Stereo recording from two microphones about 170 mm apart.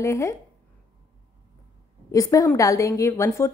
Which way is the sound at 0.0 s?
15° left (ahead or behind).